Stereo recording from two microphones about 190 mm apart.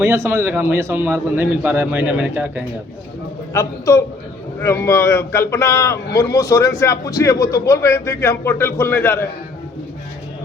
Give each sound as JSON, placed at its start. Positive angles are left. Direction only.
{"t": 0.0, "sound": "a man's voice", "side_deg": -15}
{"t": 3.5, "sound": "a man's voice", "side_deg": 15}